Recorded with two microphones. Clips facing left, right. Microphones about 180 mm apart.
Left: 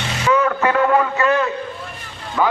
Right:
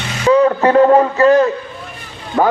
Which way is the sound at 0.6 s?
35° right (ahead or behind).